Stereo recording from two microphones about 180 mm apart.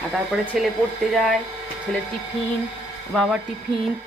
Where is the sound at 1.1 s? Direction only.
Centre (ahead or behind).